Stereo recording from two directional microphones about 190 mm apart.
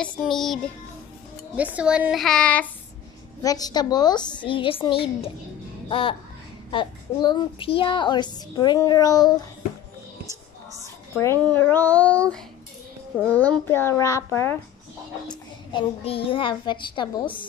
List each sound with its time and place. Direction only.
0.0 s a woman's voice: 5° left (ahead or behind)
1.6 s a woman's voice: 5° right (ahead or behind)
3.4 s a child's voice: 20° left (ahead or behind)
11.4 s a child's voice: 10° left (ahead or behind)
15.7 s a child's voice: 30° left (ahead or behind)